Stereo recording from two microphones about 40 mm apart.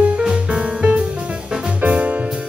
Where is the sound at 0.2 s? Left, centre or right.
Right.